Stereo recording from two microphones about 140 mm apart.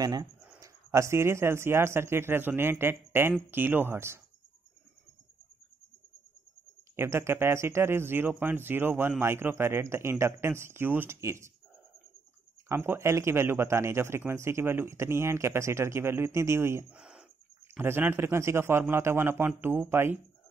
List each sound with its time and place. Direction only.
0.0 s speech: 25° right (ahead or behind)
7.0 s speech: 15° right (ahead or behind)
12.6 s speech: 15° right (ahead or behind)
16.9 s bird: 5° right (ahead or behind)
17.7 s speech: 15° right (ahead or behind)